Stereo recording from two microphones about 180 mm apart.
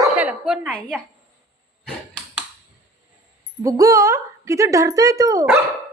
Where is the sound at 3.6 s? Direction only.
15° right (ahead or behind).